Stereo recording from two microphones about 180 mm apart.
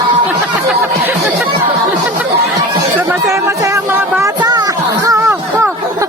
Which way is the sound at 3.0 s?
15° right (ahead or behind).